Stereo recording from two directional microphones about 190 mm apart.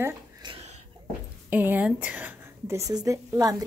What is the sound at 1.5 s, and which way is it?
A woman's voice, 10° right (ahead or behind).